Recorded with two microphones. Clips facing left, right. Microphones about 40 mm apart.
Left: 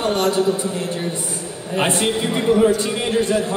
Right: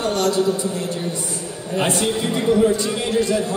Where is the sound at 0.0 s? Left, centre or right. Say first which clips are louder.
Left 1 dB; left.